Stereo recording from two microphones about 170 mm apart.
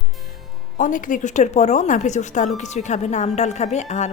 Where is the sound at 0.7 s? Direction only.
50° left (ahead or behind).